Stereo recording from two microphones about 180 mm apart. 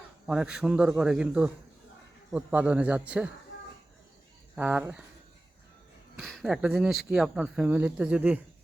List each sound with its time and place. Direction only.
0.3 s a man's voice: 5° right (ahead or behind)
4.5 s a man's voice: 10° right (ahead or behind)
6.1 s speech: centre (ahead or behind)